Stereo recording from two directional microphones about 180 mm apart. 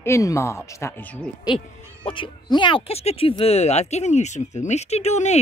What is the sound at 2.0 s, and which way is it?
Speech, 30° left (ahead or behind).